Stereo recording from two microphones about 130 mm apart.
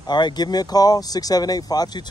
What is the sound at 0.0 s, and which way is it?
Speech, 35° left (ahead or behind).